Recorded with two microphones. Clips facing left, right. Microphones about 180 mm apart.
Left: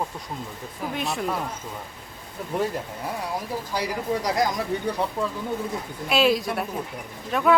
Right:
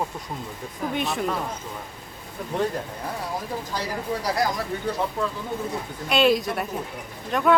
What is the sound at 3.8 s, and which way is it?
Speech, 20° left (ahead or behind).